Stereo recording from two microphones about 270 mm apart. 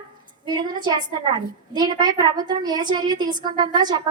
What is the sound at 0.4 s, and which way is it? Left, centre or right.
Speech, centre.